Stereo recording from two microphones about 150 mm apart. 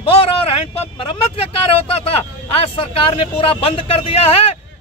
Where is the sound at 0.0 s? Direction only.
40° left (ahead or behind).